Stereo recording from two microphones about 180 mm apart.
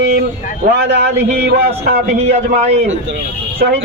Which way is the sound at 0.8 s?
70° right (ahead or behind).